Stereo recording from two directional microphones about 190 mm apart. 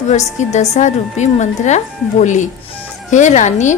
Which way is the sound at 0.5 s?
35° left (ahead or behind).